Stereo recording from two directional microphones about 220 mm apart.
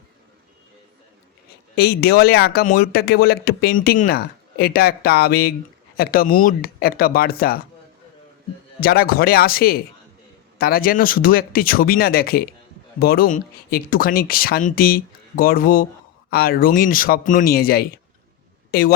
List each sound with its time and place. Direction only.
1.7 s speech: 45° left (ahead or behind)
8.8 s speech: 45° left (ahead or behind)